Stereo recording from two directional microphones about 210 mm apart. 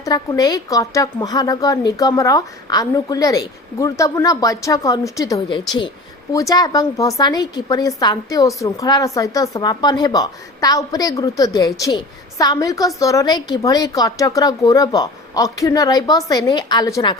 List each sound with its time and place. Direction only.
0.0 s a woman's voice: 15° left (ahead or behind)